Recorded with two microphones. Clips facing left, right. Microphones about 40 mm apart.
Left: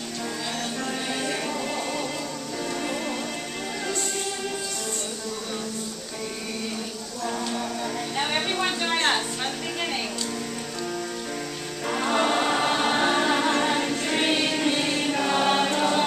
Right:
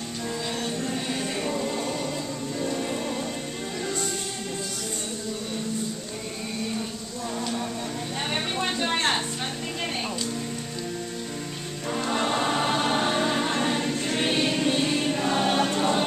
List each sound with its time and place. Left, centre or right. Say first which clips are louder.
1.5 s music: even; centre
8.2 s a sound: left 3 dB; centre
11.9 s music: left 3 dB; left
14.6 s music: even; left